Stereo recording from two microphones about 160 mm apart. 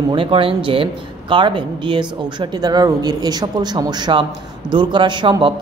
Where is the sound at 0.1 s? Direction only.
35° right (ahead or behind).